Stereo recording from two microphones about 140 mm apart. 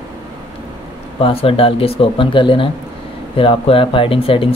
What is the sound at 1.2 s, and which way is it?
Speech, 40° left (ahead or behind).